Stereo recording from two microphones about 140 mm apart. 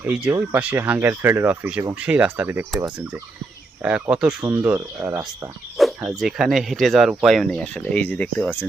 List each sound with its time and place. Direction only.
0.0 s speech: 10° right (ahead or behind)
4.1 s speech: 10° right (ahead or behind)
6.0 s speech: 5° right (ahead or behind); by 8.4 s 10° left (ahead or behind)